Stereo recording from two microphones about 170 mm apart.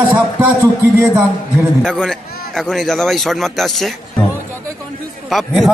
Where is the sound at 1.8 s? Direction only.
Centre (ahead or behind).